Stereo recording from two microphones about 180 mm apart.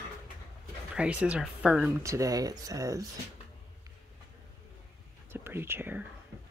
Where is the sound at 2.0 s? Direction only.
15° right (ahead or behind).